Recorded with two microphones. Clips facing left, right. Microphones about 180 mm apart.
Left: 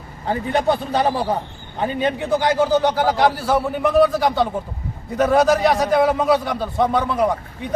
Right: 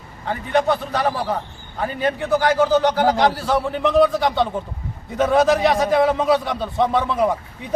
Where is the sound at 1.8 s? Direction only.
20° left (ahead or behind).